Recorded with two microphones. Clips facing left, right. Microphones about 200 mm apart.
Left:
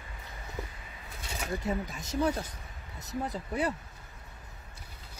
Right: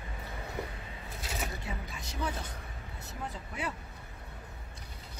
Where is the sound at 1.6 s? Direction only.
40° left (ahead or behind).